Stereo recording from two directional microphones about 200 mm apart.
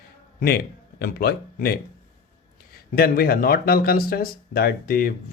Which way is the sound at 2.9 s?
50° left (ahead or behind).